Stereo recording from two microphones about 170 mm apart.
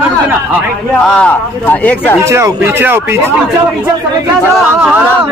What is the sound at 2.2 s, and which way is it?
Speech, 15° right (ahead or behind).